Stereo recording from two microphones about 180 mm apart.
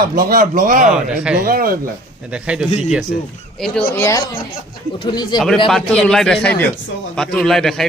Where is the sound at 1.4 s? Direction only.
55° right (ahead or behind).